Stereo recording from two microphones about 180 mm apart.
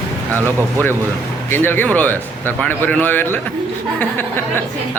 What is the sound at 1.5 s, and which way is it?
Speech, 10° left (ahead or behind).